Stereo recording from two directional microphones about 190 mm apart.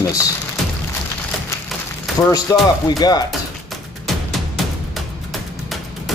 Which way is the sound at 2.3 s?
20° left (ahead or behind).